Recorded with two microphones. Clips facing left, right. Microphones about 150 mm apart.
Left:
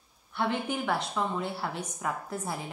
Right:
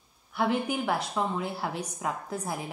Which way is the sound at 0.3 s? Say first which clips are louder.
Right 3 dB; 5° right (ahead or behind).